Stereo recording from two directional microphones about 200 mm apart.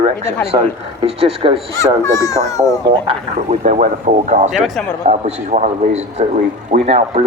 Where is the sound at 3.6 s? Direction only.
40° right (ahead or behind).